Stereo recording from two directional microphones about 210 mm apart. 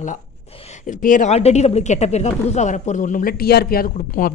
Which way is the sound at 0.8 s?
40° left (ahead or behind).